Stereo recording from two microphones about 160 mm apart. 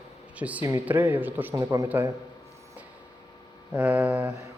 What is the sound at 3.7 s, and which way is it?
Speech, 10° right (ahead or behind).